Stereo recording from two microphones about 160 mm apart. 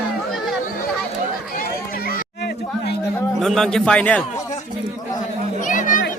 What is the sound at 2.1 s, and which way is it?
Chatter, 90° left.